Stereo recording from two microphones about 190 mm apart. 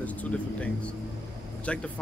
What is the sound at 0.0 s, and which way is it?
Speech, 10° left (ahead or behind).